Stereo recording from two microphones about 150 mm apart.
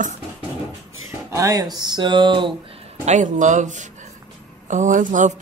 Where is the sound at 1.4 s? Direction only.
20° right (ahead or behind).